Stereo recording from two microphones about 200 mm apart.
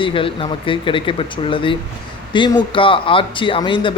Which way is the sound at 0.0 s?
25° left (ahead or behind).